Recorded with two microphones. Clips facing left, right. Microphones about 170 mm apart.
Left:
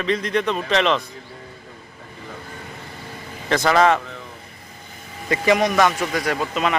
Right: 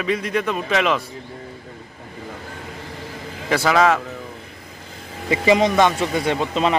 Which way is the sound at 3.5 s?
5° right (ahead or behind).